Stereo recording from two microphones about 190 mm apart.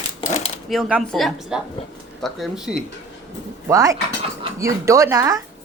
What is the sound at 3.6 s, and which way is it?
Speech, 15° right (ahead or behind).